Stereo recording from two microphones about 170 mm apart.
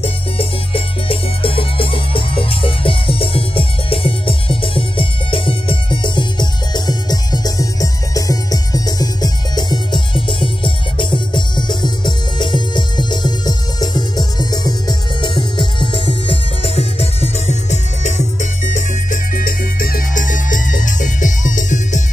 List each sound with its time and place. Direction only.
0.0 s music: 35° left (ahead or behind)